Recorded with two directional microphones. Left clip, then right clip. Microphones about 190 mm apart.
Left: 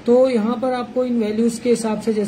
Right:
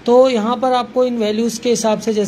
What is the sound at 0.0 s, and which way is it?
Speech, 20° right (ahead or behind).